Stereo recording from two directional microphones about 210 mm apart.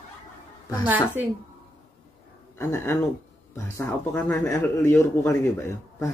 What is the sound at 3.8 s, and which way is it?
Speech, 10° left (ahead or behind).